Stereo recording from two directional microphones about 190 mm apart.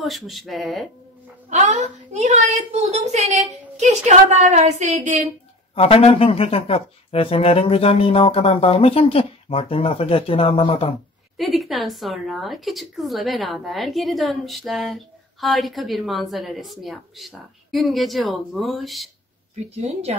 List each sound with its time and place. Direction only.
0.0 s speech: centre (ahead or behind)
1.5 s a woman's voice: 35° right (ahead or behind)
5.8 s speech: 30° left (ahead or behind)
11.3 s speech: centre (ahead or behind)
19.8 s a woman's voice: 35° right (ahead or behind)